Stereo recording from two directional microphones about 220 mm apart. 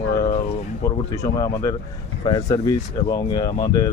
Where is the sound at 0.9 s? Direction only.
15° left (ahead or behind).